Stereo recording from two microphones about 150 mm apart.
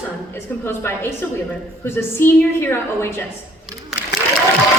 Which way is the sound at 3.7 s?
Centre (ahead or behind).